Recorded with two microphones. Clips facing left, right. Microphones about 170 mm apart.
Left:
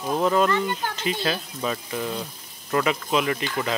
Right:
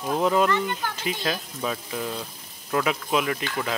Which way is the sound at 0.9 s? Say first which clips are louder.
Left 2 dB; 10° right (ahead or behind).